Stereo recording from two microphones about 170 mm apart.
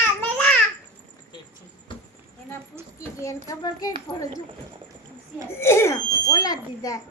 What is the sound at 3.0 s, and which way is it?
A child's voice, 20° left (ahead or behind).